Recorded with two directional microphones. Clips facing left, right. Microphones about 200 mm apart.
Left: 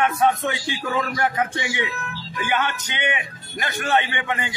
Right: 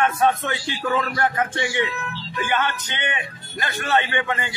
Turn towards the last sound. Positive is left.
turn(degrees=15)  # may be behind; listen again after turning